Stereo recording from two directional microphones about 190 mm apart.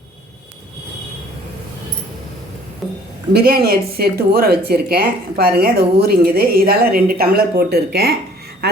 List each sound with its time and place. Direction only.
3.3 s speech: 55° right (ahead or behind)